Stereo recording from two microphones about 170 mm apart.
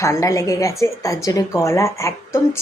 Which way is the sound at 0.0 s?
20° left (ahead or behind).